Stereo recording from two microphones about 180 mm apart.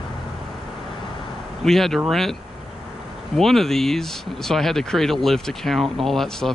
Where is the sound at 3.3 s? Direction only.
Centre (ahead or behind).